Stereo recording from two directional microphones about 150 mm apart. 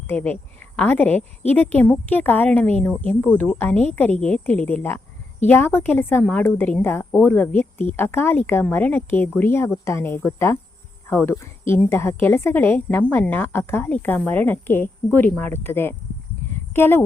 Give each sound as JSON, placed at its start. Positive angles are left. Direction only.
{"t": 0.1, "sound": "a woman's voice", "side_deg": 10}